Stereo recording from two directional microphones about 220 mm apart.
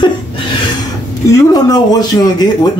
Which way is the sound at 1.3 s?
15° left (ahead or behind).